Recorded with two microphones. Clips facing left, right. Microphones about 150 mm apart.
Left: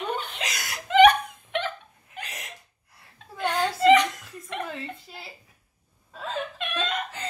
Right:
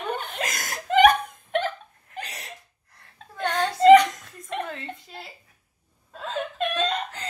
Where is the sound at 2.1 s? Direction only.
35° right (ahead or behind).